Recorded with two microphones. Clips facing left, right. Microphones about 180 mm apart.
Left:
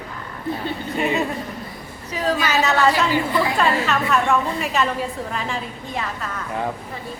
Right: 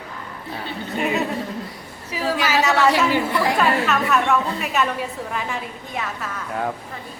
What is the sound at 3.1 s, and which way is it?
Speech, 75° right (ahead or behind).